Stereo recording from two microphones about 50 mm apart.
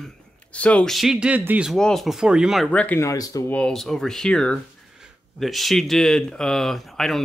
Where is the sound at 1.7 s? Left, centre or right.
Centre.